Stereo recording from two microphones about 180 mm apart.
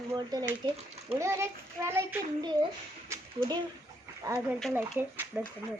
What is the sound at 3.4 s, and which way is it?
A woman's voice, 25° right (ahead or behind).